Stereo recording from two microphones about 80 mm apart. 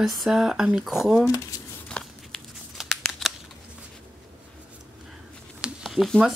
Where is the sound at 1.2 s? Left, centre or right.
Left.